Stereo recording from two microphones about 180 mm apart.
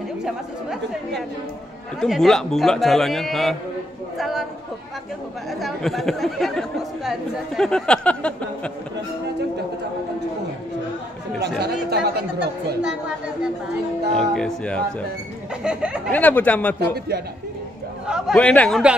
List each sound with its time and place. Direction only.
0.2 s a man's voice: 5° right (ahead or behind)
5.6 s a man's voice: centre (ahead or behind)
11.4 s speech: 65° right (ahead or behind)
14.1 s a man's voice: 5° left (ahead or behind)
16.1 s speech: 10° left (ahead or behind)
16.8 s a man's voice: 60° right (ahead or behind)
18.0 s a man's voice: centre (ahead or behind)